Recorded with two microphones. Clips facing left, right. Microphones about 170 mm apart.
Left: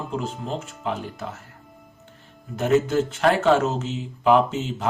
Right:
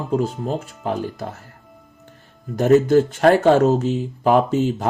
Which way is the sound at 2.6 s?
40° right (ahead or behind).